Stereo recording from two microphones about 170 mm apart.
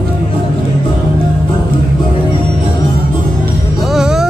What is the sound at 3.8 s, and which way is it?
Music, 5° right (ahead or behind).